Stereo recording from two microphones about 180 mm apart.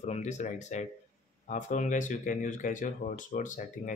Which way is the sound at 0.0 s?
40° left (ahead or behind).